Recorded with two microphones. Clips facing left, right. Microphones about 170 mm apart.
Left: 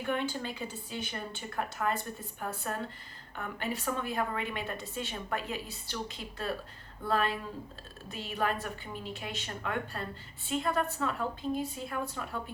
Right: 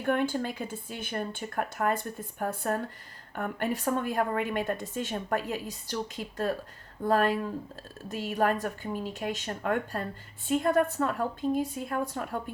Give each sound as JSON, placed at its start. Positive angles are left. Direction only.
{"t": 0.0, "sound": "a woman's voice", "side_deg": -50}